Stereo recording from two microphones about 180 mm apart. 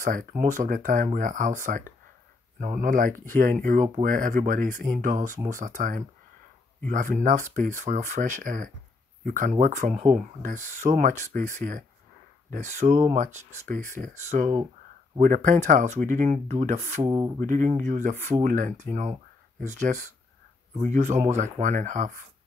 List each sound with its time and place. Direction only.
0.0 s speech: 50° right (ahead or behind)